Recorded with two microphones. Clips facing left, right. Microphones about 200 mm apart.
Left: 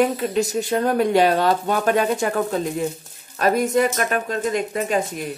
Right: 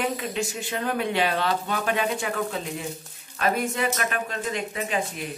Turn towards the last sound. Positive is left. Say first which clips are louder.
# left 6 dB
turn(degrees=45)  # may be behind; listen again after turning